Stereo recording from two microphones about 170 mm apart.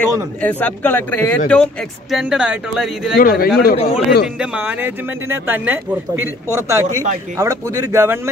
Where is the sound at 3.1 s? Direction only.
60° left (ahead or behind).